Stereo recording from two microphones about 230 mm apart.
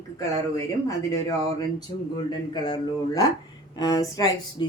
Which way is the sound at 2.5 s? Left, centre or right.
Centre.